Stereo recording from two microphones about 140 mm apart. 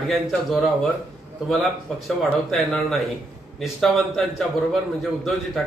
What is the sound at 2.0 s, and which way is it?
A man's voice, centre (ahead or behind).